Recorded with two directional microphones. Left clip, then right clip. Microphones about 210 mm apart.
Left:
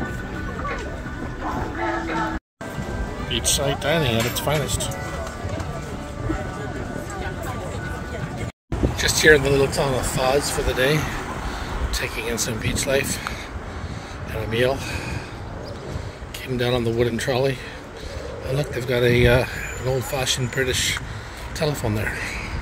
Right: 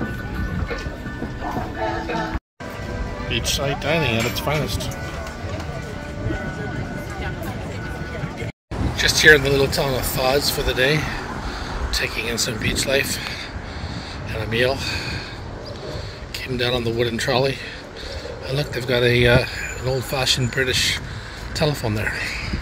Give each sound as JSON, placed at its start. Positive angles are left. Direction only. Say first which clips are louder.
{"t": 3.3, "sound": "speech", "louder": "even", "side_deg": 10}
{"t": 8.9, "sound": "speech", "louder": "right 3 dB", "side_deg": 10}
{"t": 14.3, "sound": "speech", "louder": "right 1 dB", "side_deg": 5}
{"t": 16.4, "sound": "speech", "louder": "even", "side_deg": 5}